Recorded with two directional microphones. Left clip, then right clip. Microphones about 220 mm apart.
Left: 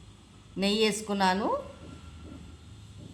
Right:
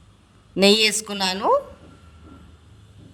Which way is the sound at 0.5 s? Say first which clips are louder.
Right 10 dB; 45° right (ahead or behind).